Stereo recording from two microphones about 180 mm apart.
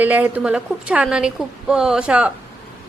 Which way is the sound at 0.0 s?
10° right (ahead or behind).